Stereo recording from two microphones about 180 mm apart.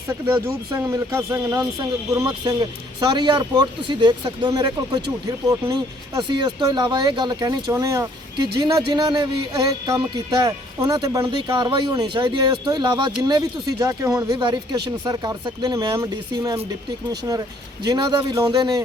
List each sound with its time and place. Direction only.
0.1 s speech: 15° right (ahead or behind)
17.8 s speech: 20° right (ahead or behind)